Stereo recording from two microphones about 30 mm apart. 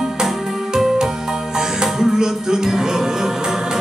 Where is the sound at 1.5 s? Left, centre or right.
Centre.